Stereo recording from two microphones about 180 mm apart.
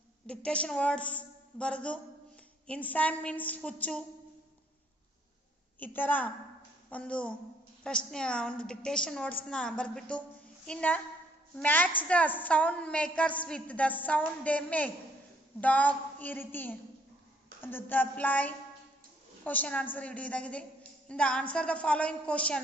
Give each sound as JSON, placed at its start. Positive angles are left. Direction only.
{"t": 0.3, "sound": "a woman's voice", "side_deg": 5}
{"t": 5.8, "sound": "a woman's voice", "side_deg": 10}